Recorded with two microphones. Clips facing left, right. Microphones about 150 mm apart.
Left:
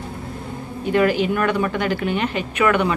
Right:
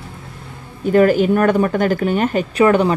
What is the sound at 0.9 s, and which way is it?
Speech, 45° right (ahead or behind).